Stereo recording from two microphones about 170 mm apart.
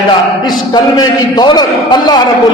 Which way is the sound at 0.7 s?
25° left (ahead or behind).